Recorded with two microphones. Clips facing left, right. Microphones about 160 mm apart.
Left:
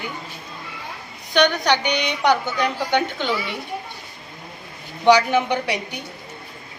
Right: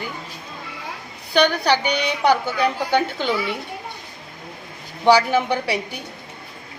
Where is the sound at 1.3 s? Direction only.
5° right (ahead or behind).